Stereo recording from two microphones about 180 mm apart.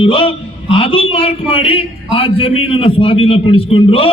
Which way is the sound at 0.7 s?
30° left (ahead or behind).